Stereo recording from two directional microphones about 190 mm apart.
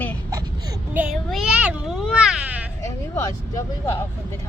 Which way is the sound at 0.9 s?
5° right (ahead or behind).